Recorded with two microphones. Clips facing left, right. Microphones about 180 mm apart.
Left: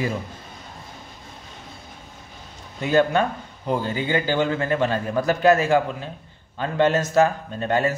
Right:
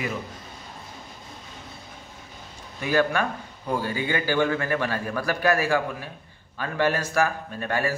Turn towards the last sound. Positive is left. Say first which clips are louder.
# left 5 dB
turn(degrees=25)  # may be behind; listen again after turning